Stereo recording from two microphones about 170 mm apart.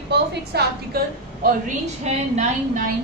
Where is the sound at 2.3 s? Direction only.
50° right (ahead or behind).